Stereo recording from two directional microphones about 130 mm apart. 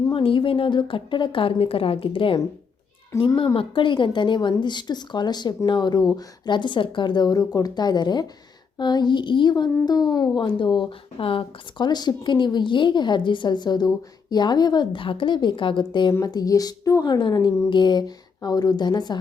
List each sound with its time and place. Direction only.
0.1 s a woman's voice: 40° left (ahead or behind)